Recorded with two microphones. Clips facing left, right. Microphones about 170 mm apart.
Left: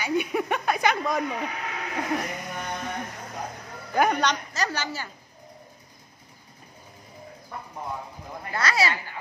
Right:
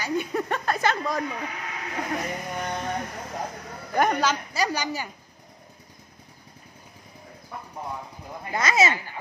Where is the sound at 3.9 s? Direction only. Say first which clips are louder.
Even; centre (ahead or behind).